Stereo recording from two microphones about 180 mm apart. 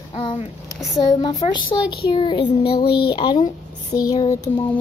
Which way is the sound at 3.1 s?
25° left (ahead or behind).